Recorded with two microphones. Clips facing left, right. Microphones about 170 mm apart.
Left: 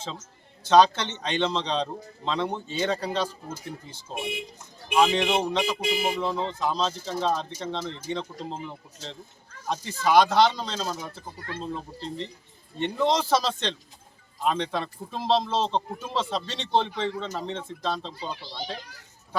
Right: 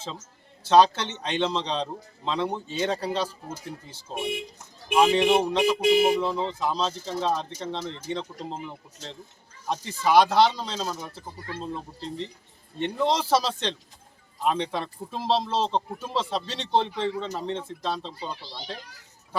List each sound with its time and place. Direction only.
0.7 s a man's voice: 5° right (ahead or behind)
5.8 s speech: 60° right (ahead or behind)
6.1 s a man's voice: 5° right (ahead or behind)